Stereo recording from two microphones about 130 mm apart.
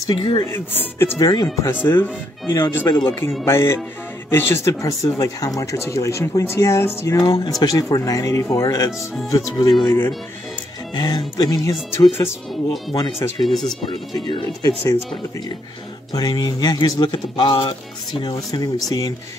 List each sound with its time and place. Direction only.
0.2 s speech: 30° left (ahead or behind)
0.5 s speech: 15° left (ahead or behind)
1.3 s speech: 30° left (ahead or behind)
1.7 s speech: 15° left (ahead or behind); by 9.8 s 30° left (ahead or behind)
11.0 s speech: 30° left (ahead or behind)
13.4 s speech: centre (ahead or behind)
14.2 s speech: 35° left (ahead or behind)
16.1 s speech: 30° left (ahead or behind)